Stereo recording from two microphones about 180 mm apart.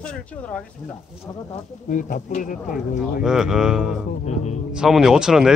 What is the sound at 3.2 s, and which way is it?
Speech, 5° right (ahead or behind).